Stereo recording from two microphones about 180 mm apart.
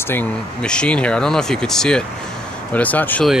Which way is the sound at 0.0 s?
10° left (ahead or behind).